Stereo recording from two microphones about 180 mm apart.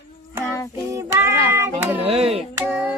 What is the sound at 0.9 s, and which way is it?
Child singing, 15° right (ahead or behind).